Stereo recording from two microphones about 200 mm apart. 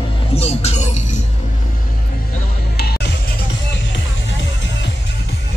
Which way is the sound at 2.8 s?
55° left (ahead or behind).